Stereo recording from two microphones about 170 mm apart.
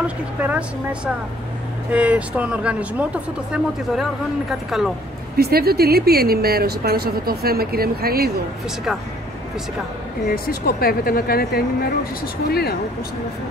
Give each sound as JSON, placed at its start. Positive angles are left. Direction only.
{"t": 0.0, "sound": "speech", "side_deg": -10}
{"t": 5.3, "sound": "a woman's voice", "side_deg": -65}
{"t": 10.3, "sound": "speech", "side_deg": 65}